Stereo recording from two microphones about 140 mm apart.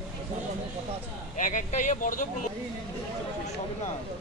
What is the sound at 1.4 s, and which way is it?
Speech, 65° left (ahead or behind).